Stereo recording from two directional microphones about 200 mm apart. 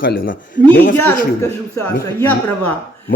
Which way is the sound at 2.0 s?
10° left (ahead or behind).